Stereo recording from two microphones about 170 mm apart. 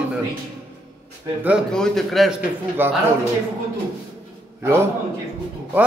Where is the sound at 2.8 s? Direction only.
10° right (ahead or behind).